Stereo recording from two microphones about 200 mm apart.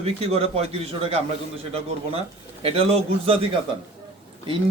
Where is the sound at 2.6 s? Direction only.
30° right (ahead or behind).